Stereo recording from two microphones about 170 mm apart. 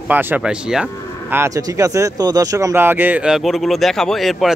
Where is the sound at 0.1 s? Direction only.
10° right (ahead or behind).